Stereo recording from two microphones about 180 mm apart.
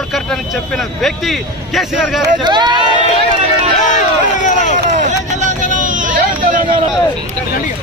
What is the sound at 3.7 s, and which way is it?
Run, 45° left (ahead or behind).